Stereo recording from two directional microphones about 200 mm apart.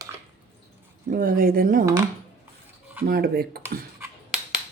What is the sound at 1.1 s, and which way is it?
Speech, 45° right (ahead or behind).